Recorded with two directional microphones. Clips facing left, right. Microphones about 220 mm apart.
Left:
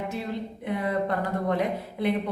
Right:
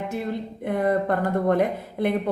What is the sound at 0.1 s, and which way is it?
A woman's voice, 50° right (ahead or behind).